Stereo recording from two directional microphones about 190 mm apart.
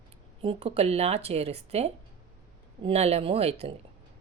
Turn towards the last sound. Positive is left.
turn(degrees=-30)  # may be behind; listen again after turning